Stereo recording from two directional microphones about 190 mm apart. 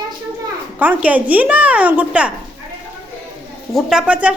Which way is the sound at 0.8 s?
10° right (ahead or behind).